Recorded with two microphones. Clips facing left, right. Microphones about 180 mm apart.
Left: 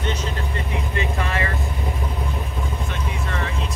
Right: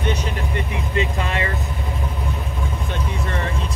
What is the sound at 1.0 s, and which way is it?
Speech, 25° right (ahead or behind).